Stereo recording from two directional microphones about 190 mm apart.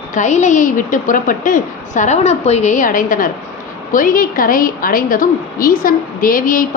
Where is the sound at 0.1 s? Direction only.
40° left (ahead or behind).